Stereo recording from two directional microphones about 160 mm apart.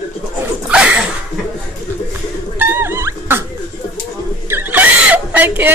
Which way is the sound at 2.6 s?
15° right (ahead or behind).